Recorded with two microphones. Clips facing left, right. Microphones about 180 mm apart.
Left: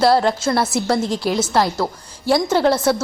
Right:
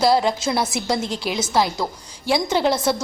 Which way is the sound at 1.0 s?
35° left (ahead or behind).